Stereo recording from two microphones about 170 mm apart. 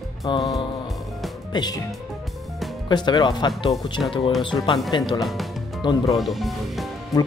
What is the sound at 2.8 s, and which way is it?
Speech, 25° left (ahead or behind).